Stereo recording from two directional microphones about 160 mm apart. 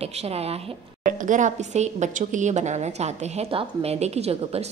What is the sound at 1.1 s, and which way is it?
A woman's voice, 55° right (ahead or behind).